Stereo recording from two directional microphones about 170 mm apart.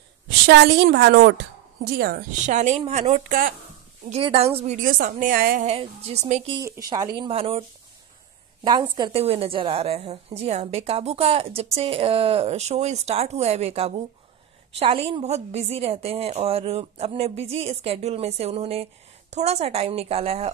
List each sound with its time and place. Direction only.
0.3 s a woman's voice: 80° right; by 2.2 s 60° right (ahead or behind)
2.4 s speech: 45° right (ahead or behind)
4.1 s a woman's voice: 35° right (ahead or behind)
4.8 s a woman's voice: 55° right (ahead or behind)
5.7 s a woman's voice: 35° right (ahead or behind)
6.5 s a woman's voice: 15° right (ahead or behind); by 7.6 s 35° right (ahead or behind)
8.9 s a woman's voice: 30° right (ahead or behind)